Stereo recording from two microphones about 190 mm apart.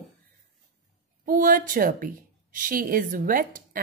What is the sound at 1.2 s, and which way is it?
A woman's voice, 45° right (ahead or behind).